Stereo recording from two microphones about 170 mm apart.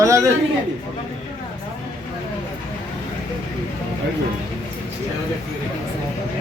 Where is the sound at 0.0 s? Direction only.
15° right (ahead or behind).